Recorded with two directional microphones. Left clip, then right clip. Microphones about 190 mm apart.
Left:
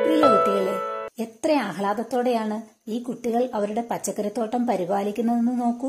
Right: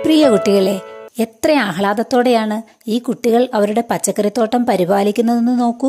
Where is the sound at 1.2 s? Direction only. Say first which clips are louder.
Right 9 dB; 35° right (ahead or behind).